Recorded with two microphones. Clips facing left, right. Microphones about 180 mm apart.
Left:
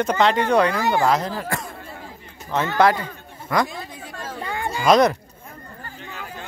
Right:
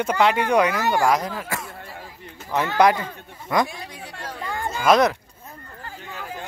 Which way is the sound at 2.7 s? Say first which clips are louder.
Even; 15° right (ahead or behind).